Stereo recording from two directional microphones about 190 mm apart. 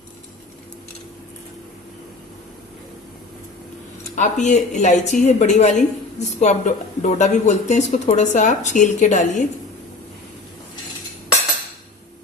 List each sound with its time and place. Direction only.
4.1 s a woman's voice: 40° left (ahead or behind)